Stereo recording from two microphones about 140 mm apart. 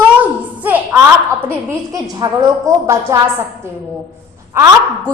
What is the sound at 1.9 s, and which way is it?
A woman's voice, 25° right (ahead or behind).